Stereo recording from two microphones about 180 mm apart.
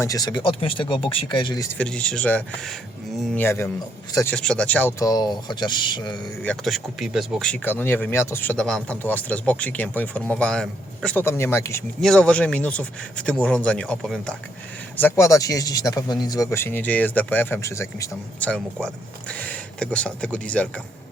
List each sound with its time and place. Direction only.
0.0 s speech: 20° left (ahead or behind)
1.8 s speech: 5° left (ahead or behind)
4.4 s speech: 5° left (ahead or behind); by 6.1 s 25° left (ahead or behind)
6.4 s speech: 5° left (ahead or behind)
11.9 s speech: 5° left (ahead or behind)